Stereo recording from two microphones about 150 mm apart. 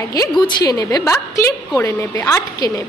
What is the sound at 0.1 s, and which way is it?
A woman's voice, 25° left (ahead or behind).